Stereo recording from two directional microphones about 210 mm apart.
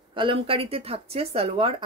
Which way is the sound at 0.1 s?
25° right (ahead or behind).